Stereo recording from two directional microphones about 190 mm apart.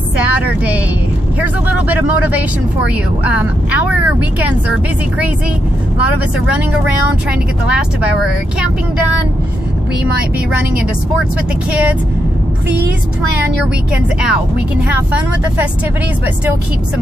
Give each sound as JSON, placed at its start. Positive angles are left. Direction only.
{"t": 0.2, "sound": "vehicle", "side_deg": -10}
{"t": 1.4, "sound": "speech", "side_deg": -10}